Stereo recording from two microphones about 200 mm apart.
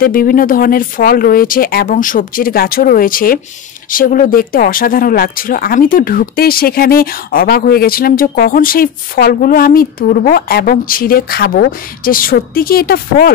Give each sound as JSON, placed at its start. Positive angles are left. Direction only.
{"t": 0.0, "sound": "speech", "side_deg": 45}